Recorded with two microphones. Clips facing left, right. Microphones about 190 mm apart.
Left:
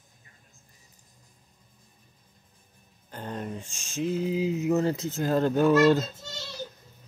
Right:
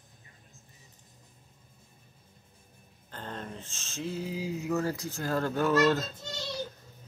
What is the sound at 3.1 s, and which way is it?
Speech, 15° left (ahead or behind).